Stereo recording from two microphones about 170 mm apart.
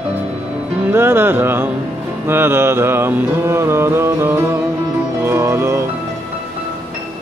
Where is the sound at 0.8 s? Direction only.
15° right (ahead or behind).